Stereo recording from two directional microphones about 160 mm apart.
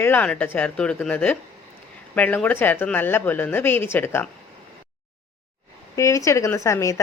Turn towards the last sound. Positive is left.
turn(degrees=20)  # may be behind; listen again after turning